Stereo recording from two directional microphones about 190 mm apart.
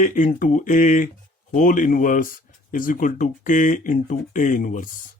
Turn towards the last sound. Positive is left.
turn(degrees=45)  # may be behind; listen again after turning